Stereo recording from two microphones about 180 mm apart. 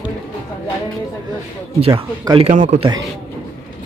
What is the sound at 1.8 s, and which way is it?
Speech, 30° right (ahead or behind).